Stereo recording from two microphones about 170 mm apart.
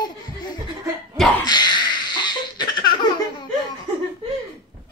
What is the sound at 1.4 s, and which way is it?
Baby laughter, 25° left (ahead or behind).